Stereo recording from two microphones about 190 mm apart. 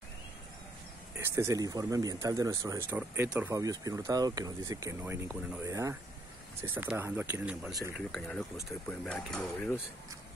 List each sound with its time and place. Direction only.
1.1 s speech: 15° right (ahead or behind)
7.9 s speech: 5° left (ahead or behind)